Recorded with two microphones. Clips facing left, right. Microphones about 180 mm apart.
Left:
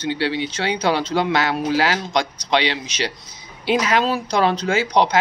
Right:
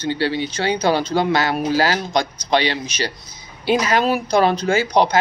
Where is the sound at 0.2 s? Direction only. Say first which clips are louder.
Right 2 dB; 40° right (ahead or behind).